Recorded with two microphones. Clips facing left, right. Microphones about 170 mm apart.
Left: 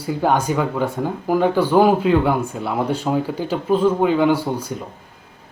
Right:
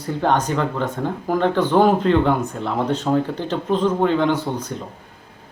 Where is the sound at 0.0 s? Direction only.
10° left (ahead or behind).